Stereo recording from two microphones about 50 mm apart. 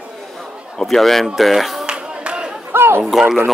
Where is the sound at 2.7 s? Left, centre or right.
Right.